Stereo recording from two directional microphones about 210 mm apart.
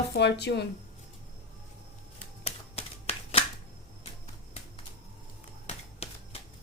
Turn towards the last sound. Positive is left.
turn(degrees=30)  # may be behind; listen again after turning